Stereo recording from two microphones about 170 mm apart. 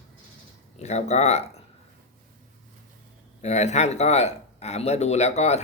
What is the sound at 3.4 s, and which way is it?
Speech, 40° left (ahead or behind).